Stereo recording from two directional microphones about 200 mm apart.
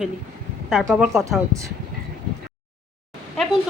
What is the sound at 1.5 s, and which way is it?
Speech, 15° right (ahead or behind).